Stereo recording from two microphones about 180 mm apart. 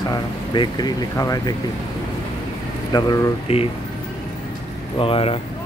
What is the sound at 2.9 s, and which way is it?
Speech, 20° left (ahead or behind).